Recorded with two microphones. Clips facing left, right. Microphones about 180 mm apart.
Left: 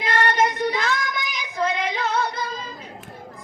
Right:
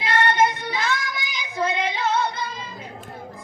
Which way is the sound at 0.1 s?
25° right (ahead or behind).